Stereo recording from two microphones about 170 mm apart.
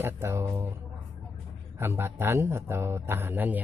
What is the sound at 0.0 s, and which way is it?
Speech, 15° right (ahead or behind).